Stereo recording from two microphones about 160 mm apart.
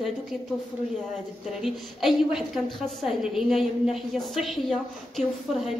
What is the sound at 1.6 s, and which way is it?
A woman's voice, centre (ahead or behind).